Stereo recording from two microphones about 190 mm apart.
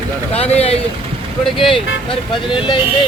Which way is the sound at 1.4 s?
Centre (ahead or behind).